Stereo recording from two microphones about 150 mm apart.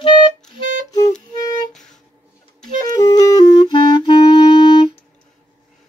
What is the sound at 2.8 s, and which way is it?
Clarinet, 25° left (ahead or behind).